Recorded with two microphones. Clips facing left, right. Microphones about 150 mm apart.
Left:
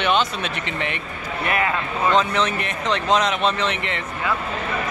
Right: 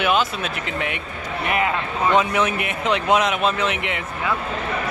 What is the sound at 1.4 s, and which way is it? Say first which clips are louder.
Speech: right 1 dB; 15° right (ahead or behind).